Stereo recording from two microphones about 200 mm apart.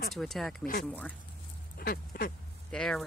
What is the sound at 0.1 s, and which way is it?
Speech, centre (ahead or behind).